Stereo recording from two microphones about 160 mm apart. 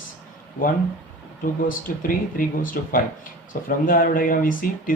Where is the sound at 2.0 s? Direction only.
60° left (ahead or behind).